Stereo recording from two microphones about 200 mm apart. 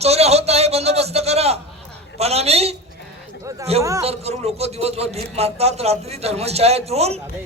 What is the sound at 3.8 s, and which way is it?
Speech, 15° right (ahead or behind).